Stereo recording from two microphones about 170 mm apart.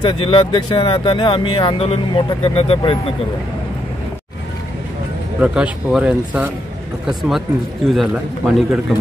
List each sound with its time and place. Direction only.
0.0 s speech: 25° left (ahead or behind)
5.4 s speech: 5° right (ahead or behind)